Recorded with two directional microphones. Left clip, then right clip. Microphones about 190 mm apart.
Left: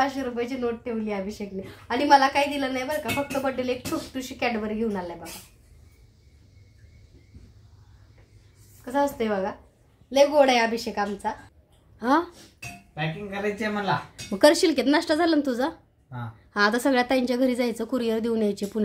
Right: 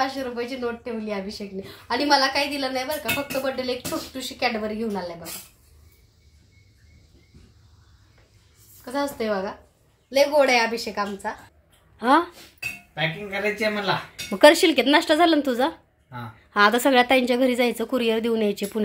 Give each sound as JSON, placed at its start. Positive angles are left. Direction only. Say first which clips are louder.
{"t": 0.0, "sound": "a woman's voice", "louder": "even", "side_deg": 20}
{"t": 8.8, "sound": "a woman's voice", "louder": "left 1 dB", "side_deg": 20}
{"t": 12.0, "sound": "a woman's voice", "louder": "right 4 dB", "side_deg": -5}
{"t": 14.3, "sound": "a woman's voice", "louder": "right 4 dB", "side_deg": -5}